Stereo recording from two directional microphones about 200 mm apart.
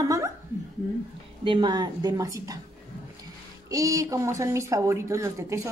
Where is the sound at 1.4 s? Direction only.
25° right (ahead or behind).